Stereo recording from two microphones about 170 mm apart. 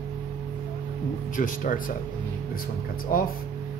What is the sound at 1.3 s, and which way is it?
Speech, 55° left (ahead or behind).